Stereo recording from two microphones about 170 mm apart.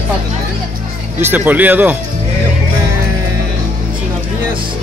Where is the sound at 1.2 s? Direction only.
10° right (ahead or behind).